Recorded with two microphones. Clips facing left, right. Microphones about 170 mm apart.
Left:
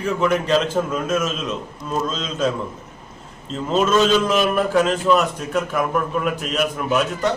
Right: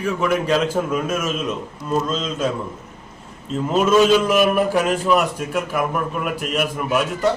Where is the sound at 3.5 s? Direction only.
10° right (ahead or behind).